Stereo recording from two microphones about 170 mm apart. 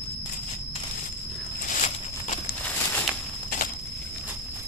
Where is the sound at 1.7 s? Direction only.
50° left (ahead or behind).